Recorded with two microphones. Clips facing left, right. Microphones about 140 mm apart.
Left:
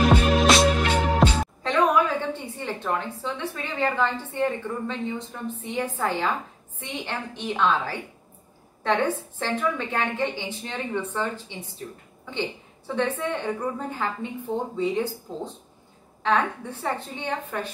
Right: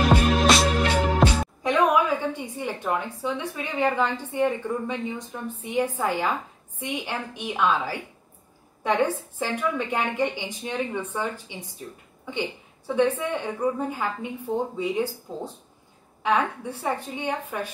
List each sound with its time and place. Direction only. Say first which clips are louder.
0.0 s music: left 1 dB; centre (ahead or behind)
0.9 s music: even; 10° right (ahead or behind)
1.6 s a sound: even; 10° right (ahead or behind)
3.5 s a woman's voice: right 1 dB; 15° right (ahead or behind)